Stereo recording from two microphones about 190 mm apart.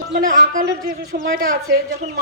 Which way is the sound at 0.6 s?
60° right (ahead or behind).